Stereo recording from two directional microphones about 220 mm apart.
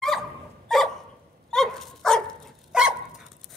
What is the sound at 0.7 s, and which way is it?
Dog, centre (ahead or behind).